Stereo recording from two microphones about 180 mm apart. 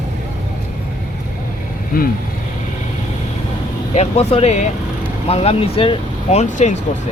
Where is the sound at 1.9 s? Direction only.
55° left (ahead or behind).